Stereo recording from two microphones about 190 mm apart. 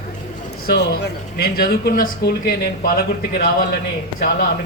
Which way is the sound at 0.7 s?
60° left (ahead or behind).